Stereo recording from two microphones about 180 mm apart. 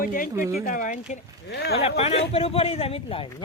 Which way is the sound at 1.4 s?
65° left (ahead or behind).